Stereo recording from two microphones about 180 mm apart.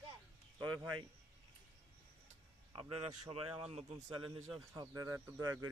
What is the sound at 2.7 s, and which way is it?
A man's voice, 30° right (ahead or behind).